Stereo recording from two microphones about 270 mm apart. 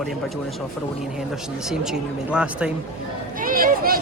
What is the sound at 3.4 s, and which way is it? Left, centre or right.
Speech, right.